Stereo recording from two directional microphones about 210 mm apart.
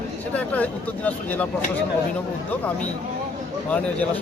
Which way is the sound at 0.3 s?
5° left (ahead or behind).